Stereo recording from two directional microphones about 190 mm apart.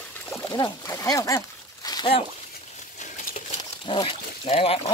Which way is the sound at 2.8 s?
40° left (ahead or behind).